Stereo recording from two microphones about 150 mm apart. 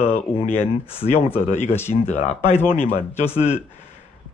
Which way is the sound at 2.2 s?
50° left (ahead or behind).